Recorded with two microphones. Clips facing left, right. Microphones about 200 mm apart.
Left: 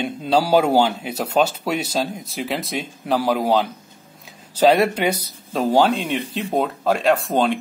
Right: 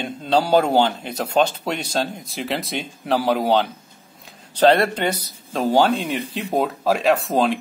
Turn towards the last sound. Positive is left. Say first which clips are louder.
# even
turn(degrees=0)  # may be behind; listen again after turning